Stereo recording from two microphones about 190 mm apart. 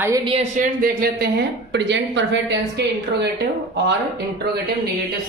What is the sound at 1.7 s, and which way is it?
A woman's voice, 65° right (ahead or behind).